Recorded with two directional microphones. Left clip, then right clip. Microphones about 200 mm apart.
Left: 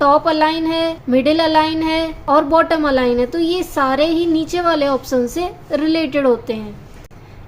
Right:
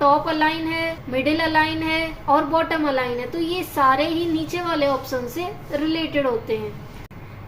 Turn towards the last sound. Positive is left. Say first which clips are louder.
# left 6 dB
turn(degrees=55)  # may be behind; listen again after turning